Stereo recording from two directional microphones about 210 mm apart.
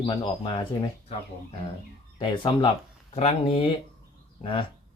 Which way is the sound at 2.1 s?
25° left (ahead or behind).